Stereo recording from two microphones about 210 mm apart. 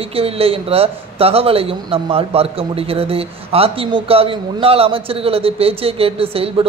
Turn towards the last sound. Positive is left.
turn(degrees=-25)  # may be behind; listen again after turning